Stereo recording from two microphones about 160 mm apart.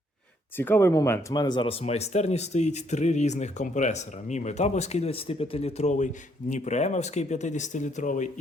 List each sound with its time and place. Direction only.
0.5 s speech: 15° left (ahead or behind)
1.3 s speech: 25° left (ahead or behind)
1.8 s speech: 40° left (ahead or behind)